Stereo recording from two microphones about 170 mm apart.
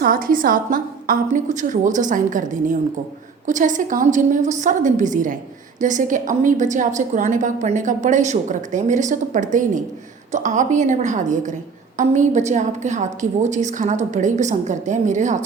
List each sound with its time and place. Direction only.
0.0 s a woman's voice: 55° right (ahead or behind)